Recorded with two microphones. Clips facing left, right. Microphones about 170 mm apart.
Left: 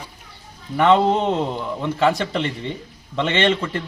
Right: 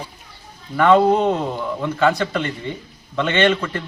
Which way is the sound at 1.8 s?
25° left (ahead or behind).